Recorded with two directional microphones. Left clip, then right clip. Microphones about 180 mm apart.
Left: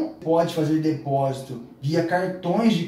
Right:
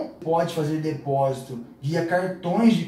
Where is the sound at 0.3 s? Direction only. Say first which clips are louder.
Left 2 dB; 20° left (ahead or behind).